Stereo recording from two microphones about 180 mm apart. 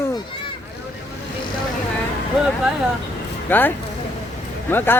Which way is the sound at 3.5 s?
10° left (ahead or behind).